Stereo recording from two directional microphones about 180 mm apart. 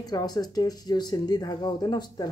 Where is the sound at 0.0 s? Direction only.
20° left (ahead or behind).